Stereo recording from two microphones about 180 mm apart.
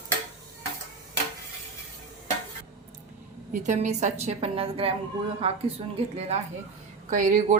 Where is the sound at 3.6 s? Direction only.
40° right (ahead or behind).